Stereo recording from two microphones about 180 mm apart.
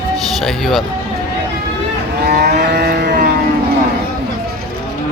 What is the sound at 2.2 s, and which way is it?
Livestock, 60° right (ahead or behind).